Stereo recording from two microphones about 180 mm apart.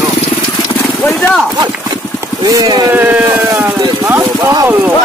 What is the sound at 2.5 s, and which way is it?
Speech, 20° right (ahead or behind).